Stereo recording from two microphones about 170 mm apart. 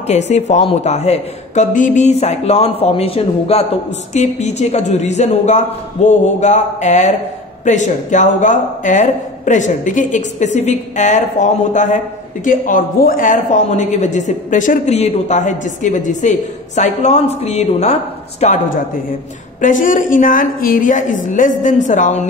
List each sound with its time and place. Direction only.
0.3 s speech: 45° left (ahead or behind)
19.6 s speech: 50° left (ahead or behind)